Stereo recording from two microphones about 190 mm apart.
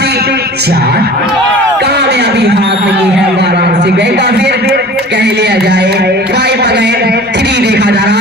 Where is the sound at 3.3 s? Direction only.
60° right (ahead or behind).